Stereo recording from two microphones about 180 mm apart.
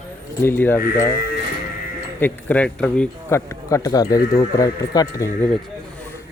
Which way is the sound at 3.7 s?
20° left (ahead or behind).